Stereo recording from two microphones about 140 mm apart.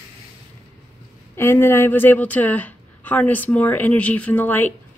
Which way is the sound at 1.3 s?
15° left (ahead or behind).